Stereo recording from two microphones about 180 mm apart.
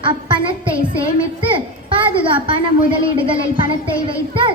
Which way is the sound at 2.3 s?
25° right (ahead or behind).